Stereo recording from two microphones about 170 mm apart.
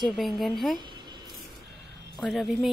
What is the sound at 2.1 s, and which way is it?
Speech, centre (ahead or behind).